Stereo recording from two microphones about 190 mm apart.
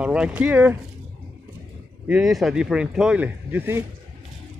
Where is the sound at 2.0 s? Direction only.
5° right (ahead or behind).